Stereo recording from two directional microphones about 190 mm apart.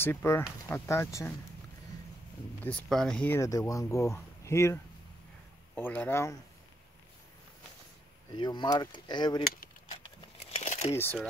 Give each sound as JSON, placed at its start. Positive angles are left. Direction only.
{"t": 0.0, "sound": "speech", "side_deg": 10}
{"t": 2.6, "sound": "speech", "side_deg": 5}
{"t": 5.8, "sound": "speech", "side_deg": 10}
{"t": 8.4, "sound": "speech", "side_deg": 20}
{"t": 10.5, "sound": "crumpling", "side_deg": 35}